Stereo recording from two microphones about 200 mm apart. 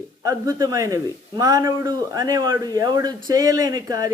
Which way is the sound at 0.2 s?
20° right (ahead or behind).